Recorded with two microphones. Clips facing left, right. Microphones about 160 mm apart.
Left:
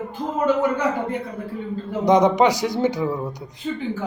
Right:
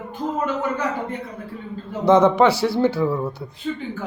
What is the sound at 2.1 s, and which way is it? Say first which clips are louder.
Speech: right 1 dB; 15° left (ahead or behind).